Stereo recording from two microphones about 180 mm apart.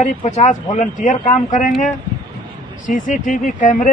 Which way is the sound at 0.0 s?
40° left (ahead or behind).